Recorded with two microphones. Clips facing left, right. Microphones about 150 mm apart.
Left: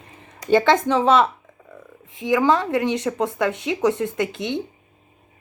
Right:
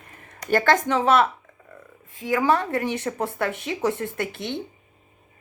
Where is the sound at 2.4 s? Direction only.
20° left (ahead or behind).